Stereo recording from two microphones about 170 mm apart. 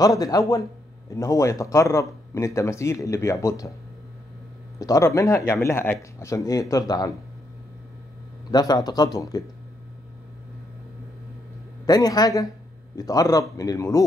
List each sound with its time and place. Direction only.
0.0 s speech: 20° left (ahead or behind)
4.7 s speech: 20° left (ahead or behind)
8.5 s speech: 25° left (ahead or behind)
11.8 s speech: 20° left (ahead or behind)